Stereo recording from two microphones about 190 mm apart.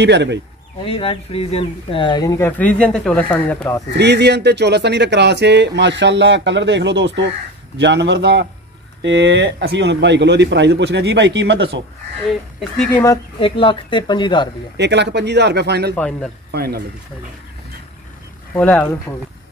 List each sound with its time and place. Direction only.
0.0 s speech: 65° right (ahead or behind)
0.8 s speech: 30° left (ahead or behind); by 3.8 s 10° left (ahead or behind)
3.9 s speech: 65° right (ahead or behind)
12.9 s speech: 20° left (ahead or behind)
14.8 s speech: 65° right (ahead or behind)
16.0 s a man's voice: 5° left (ahead or behind)
16.5 s speech: 55° right (ahead or behind)
18.5 s speech: 10° left (ahead or behind)